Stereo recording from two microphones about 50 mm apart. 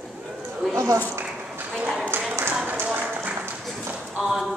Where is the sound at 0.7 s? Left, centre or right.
Right.